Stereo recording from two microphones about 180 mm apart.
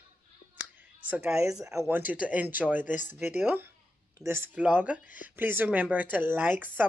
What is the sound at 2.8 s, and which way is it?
Speech, 45° left (ahead or behind).